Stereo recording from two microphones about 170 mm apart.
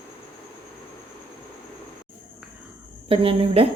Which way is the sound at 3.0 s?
35° right (ahead or behind).